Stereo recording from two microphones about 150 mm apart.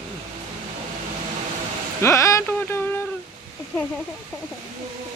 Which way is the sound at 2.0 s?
20° left (ahead or behind).